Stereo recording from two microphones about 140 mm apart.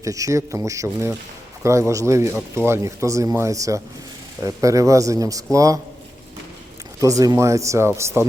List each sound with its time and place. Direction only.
0.0 s speech: 25° right (ahead or behind)
7.0 s speech: 25° right (ahead or behind)